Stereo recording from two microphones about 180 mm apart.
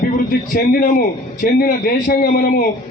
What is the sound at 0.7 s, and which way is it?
A man's voice, 50° left (ahead or behind).